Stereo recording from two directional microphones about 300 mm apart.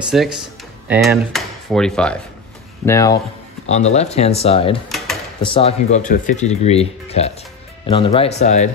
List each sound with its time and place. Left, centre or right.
0.1 s speech: centre
3.6 s speech: left
4.8 s a sound: centre
5.4 s speech: centre